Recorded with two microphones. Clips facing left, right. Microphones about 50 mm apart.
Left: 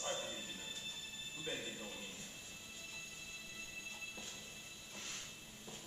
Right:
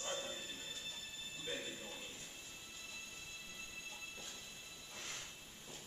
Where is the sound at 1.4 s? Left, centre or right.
Centre.